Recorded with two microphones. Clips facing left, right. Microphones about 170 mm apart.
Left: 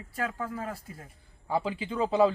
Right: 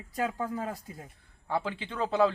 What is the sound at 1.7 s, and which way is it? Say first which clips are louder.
Speech: left 3 dB; 5° left (ahead or behind).